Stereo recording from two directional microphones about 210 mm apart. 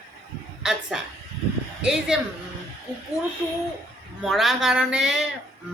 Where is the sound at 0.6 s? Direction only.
Centre (ahead or behind).